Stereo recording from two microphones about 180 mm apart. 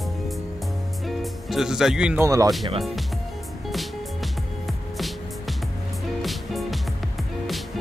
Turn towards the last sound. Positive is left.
turn(degrees=0)  # may be behind; listen again after turning